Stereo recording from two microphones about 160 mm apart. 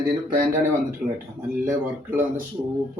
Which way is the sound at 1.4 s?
15° right (ahead or behind).